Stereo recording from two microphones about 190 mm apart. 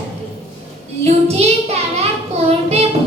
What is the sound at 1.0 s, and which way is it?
Child singing, 35° right (ahead or behind).